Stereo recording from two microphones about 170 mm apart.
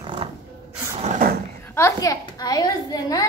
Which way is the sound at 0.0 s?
30° right (ahead or behind).